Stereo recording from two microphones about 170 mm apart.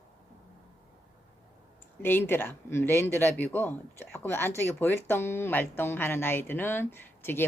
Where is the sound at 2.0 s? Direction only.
15° left (ahead or behind).